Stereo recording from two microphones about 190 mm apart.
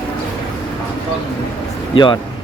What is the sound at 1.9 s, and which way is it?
Speech, 25° left (ahead or behind).